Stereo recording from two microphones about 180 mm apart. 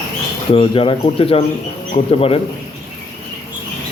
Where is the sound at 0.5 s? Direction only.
30° left (ahead or behind).